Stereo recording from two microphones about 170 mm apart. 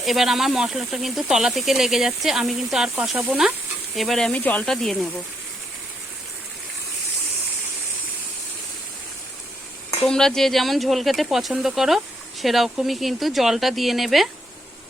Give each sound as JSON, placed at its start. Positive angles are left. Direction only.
{"t": 0.0, "sound": "speech", "side_deg": 0}
{"t": 10.1, "sound": "speech", "side_deg": 5}